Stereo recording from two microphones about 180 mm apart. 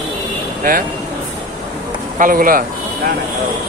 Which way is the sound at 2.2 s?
50° right (ahead or behind).